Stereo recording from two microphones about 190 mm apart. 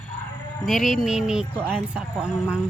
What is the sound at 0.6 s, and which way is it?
Speech, centre (ahead or behind).